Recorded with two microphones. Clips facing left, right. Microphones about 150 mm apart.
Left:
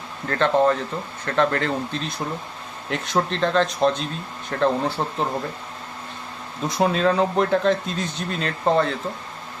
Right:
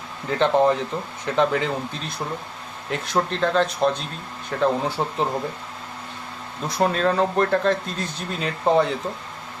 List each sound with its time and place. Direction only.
0.3 s speech: 15° right (ahead or behind)
6.7 s speech: centre (ahead or behind)